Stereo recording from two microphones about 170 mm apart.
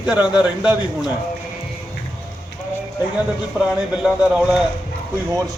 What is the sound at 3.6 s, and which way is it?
A man's voice, 10° right (ahead or behind).